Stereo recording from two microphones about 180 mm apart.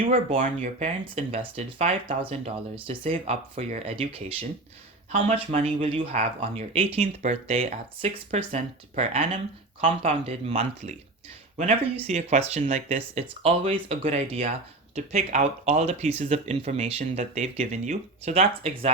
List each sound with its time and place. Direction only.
0.3 s speech: 45° right (ahead or behind)